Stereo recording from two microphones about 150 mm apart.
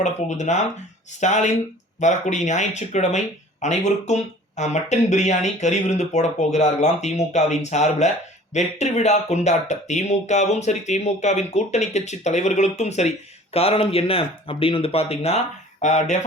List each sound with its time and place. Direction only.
0.0 s speech: 50° left (ahead or behind)